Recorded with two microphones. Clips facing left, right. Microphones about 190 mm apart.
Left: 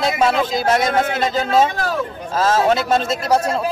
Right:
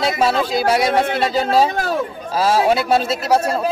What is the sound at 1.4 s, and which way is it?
Speech, 35° right (ahead or behind).